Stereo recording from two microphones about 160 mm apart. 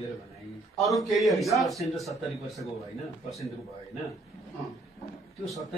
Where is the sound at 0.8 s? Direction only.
Centre (ahead or behind).